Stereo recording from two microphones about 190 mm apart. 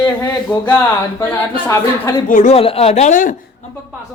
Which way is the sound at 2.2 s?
40° left (ahead or behind).